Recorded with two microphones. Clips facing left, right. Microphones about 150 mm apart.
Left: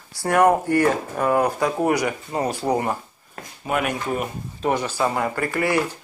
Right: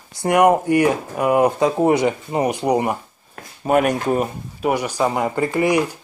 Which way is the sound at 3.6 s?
45° right (ahead or behind).